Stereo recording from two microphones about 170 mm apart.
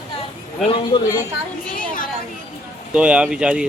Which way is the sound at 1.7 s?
55° left (ahead or behind).